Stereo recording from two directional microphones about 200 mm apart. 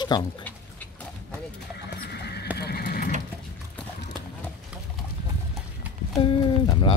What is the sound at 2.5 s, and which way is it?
Horse, 55° left (ahead or behind).